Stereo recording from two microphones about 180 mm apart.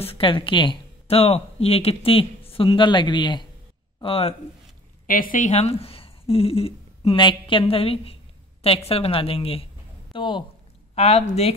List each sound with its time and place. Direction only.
0.0 s a woman's voice: 30° left (ahead or behind)
5.0 s a woman's voice: 50° left (ahead or behind)